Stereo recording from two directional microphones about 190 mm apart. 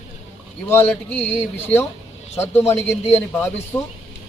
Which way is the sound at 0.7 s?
10° left (ahead or behind).